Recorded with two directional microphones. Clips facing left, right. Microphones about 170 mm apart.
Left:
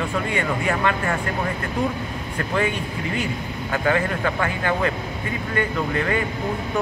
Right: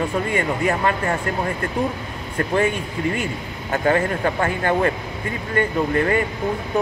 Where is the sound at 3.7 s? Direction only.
40° right (ahead or behind).